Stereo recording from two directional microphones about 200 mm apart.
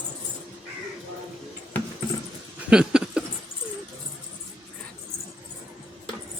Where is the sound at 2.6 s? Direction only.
5° right (ahead or behind).